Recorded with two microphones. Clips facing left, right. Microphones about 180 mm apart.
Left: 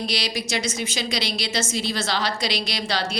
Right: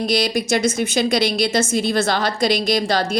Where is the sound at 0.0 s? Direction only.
50° right (ahead or behind).